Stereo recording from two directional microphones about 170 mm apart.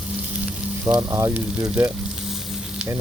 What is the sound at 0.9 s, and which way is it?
Frying, 15° right (ahead or behind).